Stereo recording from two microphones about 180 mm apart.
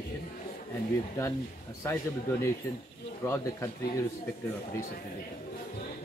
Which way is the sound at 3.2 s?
15° left (ahead or behind).